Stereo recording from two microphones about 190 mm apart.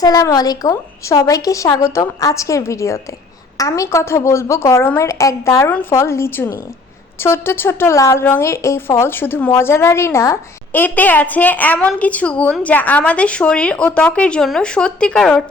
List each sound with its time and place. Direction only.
0.0 s a woman's voice: 20° left (ahead or behind); by 15.4 s 5° left (ahead or behind)